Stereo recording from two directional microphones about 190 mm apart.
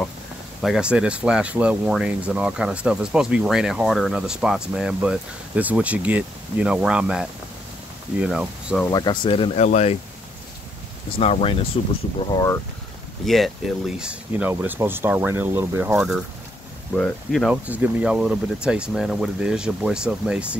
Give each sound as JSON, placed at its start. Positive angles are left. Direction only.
{"t": 0.6, "sound": "speech", "side_deg": -5}
{"t": 8.9, "sound": "speech", "side_deg": 25}
{"t": 11.1, "sound": "speech", "side_deg": 30}
{"t": 13.2, "sound": "speech", "side_deg": 0}